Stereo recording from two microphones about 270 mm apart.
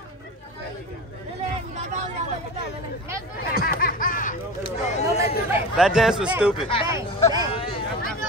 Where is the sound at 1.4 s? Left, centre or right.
Right.